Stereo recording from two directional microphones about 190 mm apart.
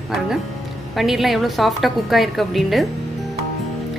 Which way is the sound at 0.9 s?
Centre (ahead or behind).